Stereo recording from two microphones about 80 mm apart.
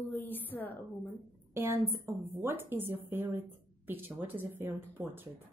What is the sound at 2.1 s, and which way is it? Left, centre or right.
Speech, right.